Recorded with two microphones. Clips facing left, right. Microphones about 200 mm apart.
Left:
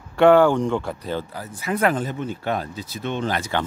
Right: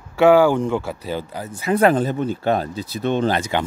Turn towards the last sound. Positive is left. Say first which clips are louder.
# right 3 dB
turn(degrees=-15)  # may be behind; listen again after turning